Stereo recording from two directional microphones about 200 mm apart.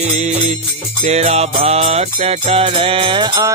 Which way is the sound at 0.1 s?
35° right (ahead or behind).